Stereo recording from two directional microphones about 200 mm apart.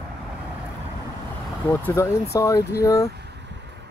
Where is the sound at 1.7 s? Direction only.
10° left (ahead or behind).